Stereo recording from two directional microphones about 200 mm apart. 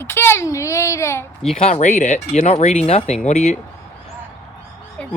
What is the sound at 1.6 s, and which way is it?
Speech, 35° left (ahead or behind).